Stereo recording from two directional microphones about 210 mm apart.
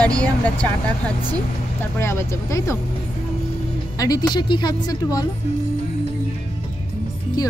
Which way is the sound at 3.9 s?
15° left (ahead or behind).